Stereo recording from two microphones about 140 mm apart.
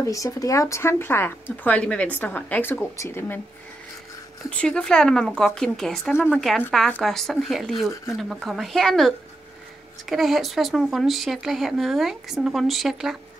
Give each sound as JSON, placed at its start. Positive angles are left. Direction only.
{"t": 0.0, "sound": "speech", "side_deg": 25}
{"t": 4.5, "sound": "speech", "side_deg": 10}